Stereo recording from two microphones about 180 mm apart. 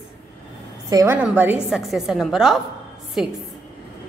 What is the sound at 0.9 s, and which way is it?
A woman's voice, 20° right (ahead or behind).